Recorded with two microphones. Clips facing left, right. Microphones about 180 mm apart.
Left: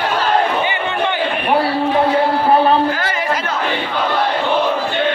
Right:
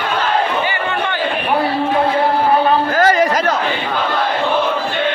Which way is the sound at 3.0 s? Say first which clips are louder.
Right 7 dB; 40° right (ahead or behind).